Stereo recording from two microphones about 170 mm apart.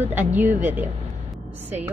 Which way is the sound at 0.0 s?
10° right (ahead or behind).